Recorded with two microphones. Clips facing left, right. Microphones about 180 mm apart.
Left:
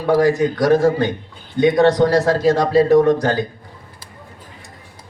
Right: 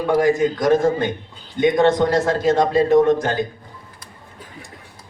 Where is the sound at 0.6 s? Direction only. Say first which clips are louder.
Left 4 dB; 20° right (ahead or behind).